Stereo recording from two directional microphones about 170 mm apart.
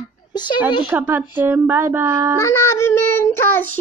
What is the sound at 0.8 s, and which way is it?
Speech, 10° right (ahead or behind).